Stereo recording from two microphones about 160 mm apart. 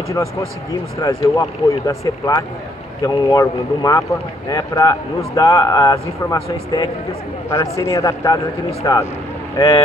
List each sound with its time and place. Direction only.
0.1 s speech: 20° left (ahead or behind)